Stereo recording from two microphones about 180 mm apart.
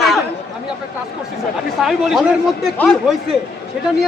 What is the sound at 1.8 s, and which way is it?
Speech, centre (ahead or behind).